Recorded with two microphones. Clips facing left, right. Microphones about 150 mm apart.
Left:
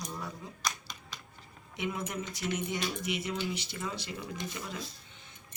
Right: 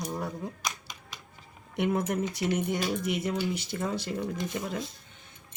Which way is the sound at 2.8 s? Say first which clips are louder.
Right 5 dB; 45° right (ahead or behind).